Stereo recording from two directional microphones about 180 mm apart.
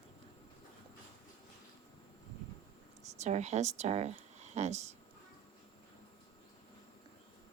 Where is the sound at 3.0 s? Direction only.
40° right (ahead or behind).